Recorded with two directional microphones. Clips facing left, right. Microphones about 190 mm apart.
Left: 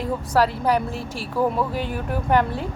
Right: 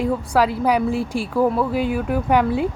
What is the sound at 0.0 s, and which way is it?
Speech, 10° right (ahead or behind).